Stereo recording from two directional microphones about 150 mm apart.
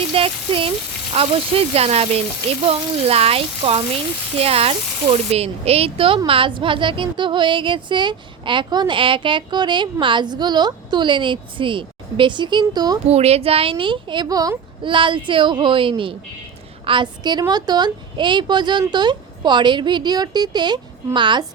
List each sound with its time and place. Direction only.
0.1 s speech: 35° right (ahead or behind)
13.1 s a woman's voice: 45° right (ahead or behind)